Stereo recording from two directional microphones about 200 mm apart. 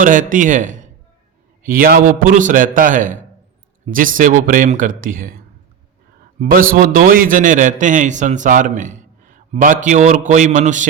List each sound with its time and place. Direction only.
0.0 s a man's voice: 40° right (ahead or behind)
6.4 s a man's voice: 45° right (ahead or behind)